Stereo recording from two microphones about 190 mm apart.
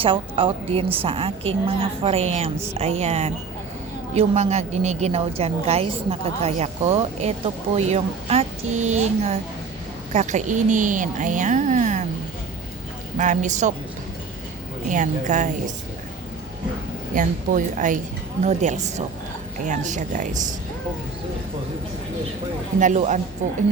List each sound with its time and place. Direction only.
0.0 s a woman's voice: 25° right (ahead or behind)
13.1 s a woman's voice: 40° right (ahead or behind)
14.8 s a woman's voice: 40° right (ahead or behind)
17.2 s a woman's voice: 40° right (ahead or behind)
22.8 s a woman's voice: 40° right (ahead or behind)